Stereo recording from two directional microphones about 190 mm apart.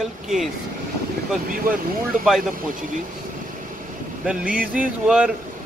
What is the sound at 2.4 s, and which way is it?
Speech, 45° right (ahead or behind).